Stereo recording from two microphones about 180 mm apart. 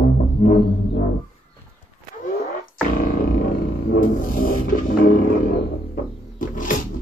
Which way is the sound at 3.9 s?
50° left (ahead or behind).